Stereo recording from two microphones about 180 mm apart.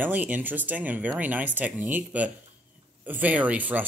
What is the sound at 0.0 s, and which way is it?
Speech, 10° right (ahead or behind).